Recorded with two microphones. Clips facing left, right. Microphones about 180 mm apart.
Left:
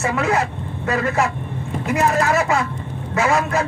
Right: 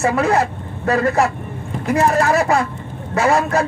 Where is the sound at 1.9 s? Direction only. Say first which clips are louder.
Right 3 dB; 35° right (ahead or behind).